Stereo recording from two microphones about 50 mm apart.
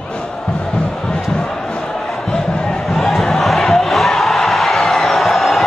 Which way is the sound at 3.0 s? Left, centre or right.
Centre.